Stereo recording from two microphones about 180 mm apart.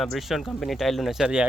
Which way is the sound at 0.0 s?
Centre (ahead or behind).